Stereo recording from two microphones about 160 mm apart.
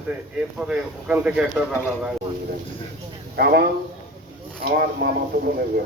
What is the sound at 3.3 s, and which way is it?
Speech, 80° right.